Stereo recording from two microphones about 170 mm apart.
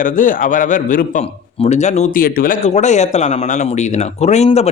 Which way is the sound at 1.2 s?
35° left (ahead or behind).